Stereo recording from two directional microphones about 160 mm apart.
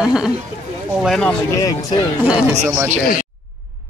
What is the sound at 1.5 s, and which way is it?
Speech, 20° left (ahead or behind).